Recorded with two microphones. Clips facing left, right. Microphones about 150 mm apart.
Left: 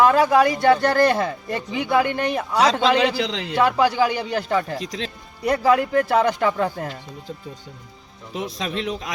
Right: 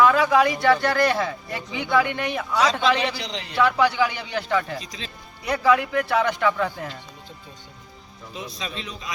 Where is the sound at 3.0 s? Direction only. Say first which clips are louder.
Left 6 dB; 90° left.